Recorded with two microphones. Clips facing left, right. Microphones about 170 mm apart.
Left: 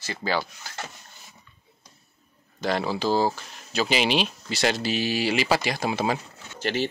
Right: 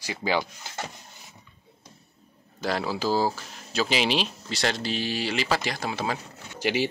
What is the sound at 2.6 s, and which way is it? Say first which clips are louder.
Speech: left 2 dB; centre (ahead or behind).